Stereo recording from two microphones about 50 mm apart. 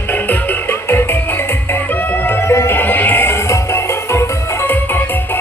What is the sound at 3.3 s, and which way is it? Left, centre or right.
Music, left.